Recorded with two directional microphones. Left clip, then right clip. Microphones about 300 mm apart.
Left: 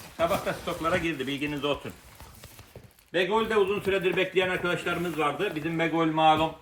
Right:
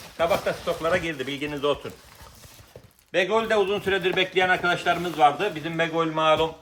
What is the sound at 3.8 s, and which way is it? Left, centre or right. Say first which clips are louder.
A man's voice: right 3 dB; right.